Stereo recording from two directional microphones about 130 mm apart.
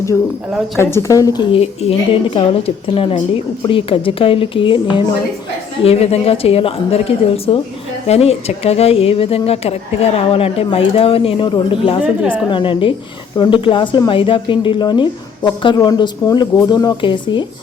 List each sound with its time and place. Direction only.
0.8 s a woman's voice: 20° left (ahead or behind); by 5.0 s 40° left (ahead or behind)
5.8 s a woman's voice: 50° left (ahead or behind)